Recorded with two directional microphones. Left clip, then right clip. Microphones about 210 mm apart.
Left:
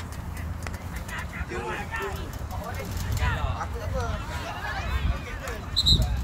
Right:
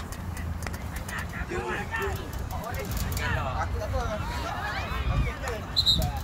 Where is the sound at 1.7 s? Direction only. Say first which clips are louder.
Right 1 dB; 35° left (ahead or behind).